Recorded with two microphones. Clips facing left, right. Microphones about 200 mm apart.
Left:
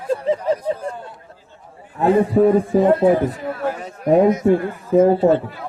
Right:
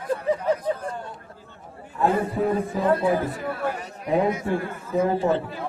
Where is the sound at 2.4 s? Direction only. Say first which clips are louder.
Left 13 dB; 55° left (ahead or behind).